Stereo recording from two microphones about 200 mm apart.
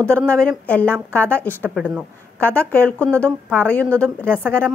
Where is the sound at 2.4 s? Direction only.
5° left (ahead or behind).